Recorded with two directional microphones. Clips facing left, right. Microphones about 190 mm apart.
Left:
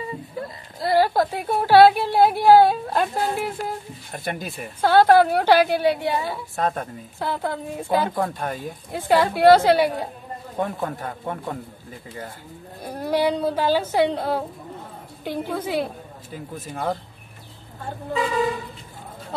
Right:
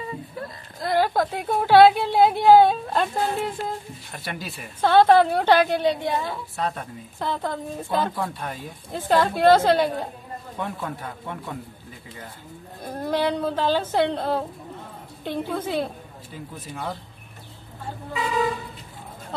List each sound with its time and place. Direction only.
0.7 s a woman's voice: 5° left (ahead or behind)
4.1 s speech: 50° left (ahead or behind)
4.8 s a woman's voice: 5° left (ahead or behind)
6.5 s speech: 45° left (ahead or behind)
7.2 s a woman's voice: 10° left (ahead or behind)
8.1 s speech: 45° left (ahead or behind)
8.9 s a woman's voice: 10° left (ahead or behind)
10.6 s speech: 45° left (ahead or behind)
12.9 s a woman's voice: 10° left (ahead or behind)
16.5 s speech: 50° left (ahead or behind)